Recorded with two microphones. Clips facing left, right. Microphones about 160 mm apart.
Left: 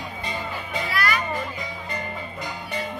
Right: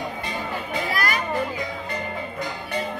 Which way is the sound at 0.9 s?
45° right (ahead or behind).